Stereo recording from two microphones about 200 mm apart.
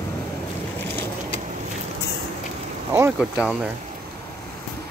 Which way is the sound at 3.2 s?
5° right (ahead or behind).